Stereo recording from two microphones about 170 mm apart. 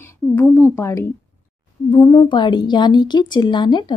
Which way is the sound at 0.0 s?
15° left (ahead or behind).